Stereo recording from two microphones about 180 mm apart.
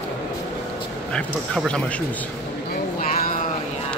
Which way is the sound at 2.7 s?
50° left (ahead or behind).